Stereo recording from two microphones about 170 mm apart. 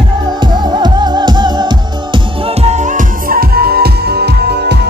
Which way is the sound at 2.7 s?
45° right (ahead or behind).